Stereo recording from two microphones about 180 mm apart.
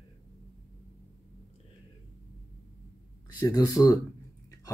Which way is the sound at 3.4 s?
20° left (ahead or behind).